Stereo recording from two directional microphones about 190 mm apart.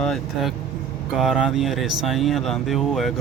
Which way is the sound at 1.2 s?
Centre (ahead or behind).